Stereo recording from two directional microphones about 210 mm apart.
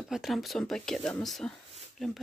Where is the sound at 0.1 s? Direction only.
Centre (ahead or behind).